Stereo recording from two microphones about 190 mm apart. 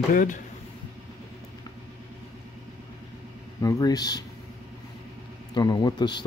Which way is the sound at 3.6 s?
20° left (ahead or behind).